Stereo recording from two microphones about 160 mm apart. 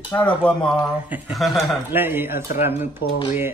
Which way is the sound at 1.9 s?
15° right (ahead or behind).